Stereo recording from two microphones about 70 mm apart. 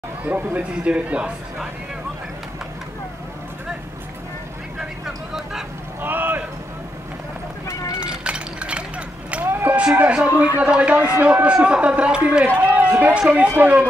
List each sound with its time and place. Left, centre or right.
0.2 s a man's voice: right
4.7 s vehicle: centre
5.9 s run: right
8.0 s a sound: centre
9.4 s a sound: right
9.8 s a man's voice: centre